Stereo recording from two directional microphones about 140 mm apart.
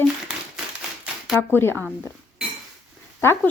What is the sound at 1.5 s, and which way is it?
Speech, 15° left (ahead or behind).